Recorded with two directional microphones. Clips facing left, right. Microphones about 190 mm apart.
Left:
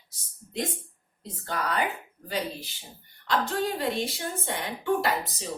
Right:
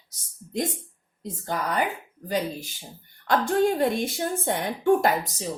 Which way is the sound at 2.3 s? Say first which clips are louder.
Right 4 dB; 45° right (ahead or behind).